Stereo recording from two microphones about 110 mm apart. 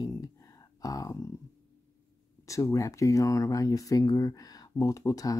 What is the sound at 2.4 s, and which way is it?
Speech, 30° left (ahead or behind).